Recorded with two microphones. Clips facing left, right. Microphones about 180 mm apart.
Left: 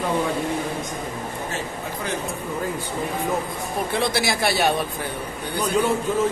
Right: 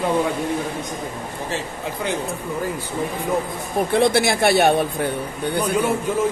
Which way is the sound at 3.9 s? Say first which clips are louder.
Right 7 dB; 55° right (ahead or behind).